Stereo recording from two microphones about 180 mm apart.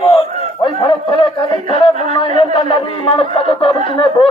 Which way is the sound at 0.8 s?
30° left (ahead or behind).